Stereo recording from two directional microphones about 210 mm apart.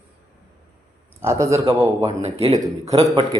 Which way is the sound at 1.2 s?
15° right (ahead or behind).